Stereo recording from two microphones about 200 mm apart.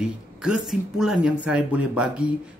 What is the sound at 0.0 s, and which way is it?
Speech, 5° right (ahead or behind).